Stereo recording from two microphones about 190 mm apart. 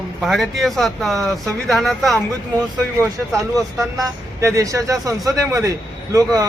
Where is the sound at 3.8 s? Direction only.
15° right (ahead or behind).